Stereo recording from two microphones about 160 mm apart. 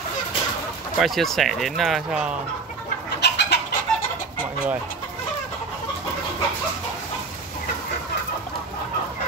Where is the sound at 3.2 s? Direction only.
90° left.